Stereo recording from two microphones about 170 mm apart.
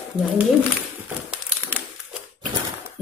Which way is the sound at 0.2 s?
30° right (ahead or behind).